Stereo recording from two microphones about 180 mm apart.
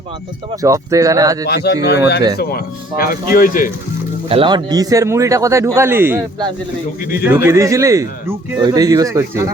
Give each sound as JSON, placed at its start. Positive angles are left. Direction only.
{"t": 0.6, "sound": "speech", "side_deg": -20}
{"t": 1.5, "sound": "speech", "side_deg": 65}
{"t": 4.3, "sound": "speech", "side_deg": -30}
{"t": 7.3, "sound": "speech", "side_deg": -15}